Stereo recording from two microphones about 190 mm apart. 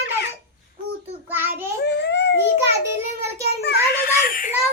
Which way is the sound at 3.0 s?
35° left (ahead or behind).